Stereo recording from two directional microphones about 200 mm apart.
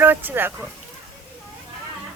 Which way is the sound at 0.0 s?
10° right (ahead or behind).